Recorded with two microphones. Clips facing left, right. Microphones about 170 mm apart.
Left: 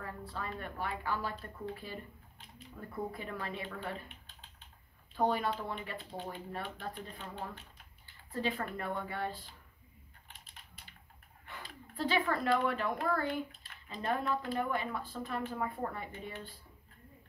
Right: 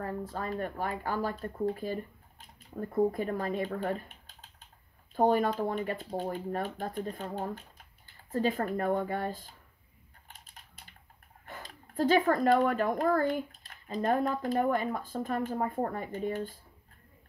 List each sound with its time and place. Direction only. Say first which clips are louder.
0.0 s speech: right 7 dB; 45° right (ahead or behind)
10.2 s typing: right 4 dB; 40° right (ahead or behind)
11.4 s speech: right 3 dB; 45° right (ahead or behind)